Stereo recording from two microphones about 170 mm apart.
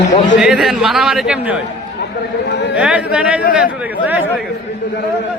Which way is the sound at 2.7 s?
5° right (ahead or behind).